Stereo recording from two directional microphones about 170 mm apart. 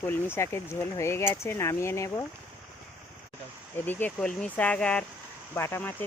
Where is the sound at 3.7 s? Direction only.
10° left (ahead or behind).